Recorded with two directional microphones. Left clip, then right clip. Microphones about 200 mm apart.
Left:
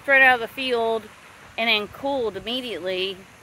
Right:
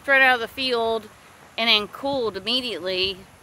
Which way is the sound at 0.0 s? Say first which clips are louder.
Left 1 dB; 5° right (ahead or behind).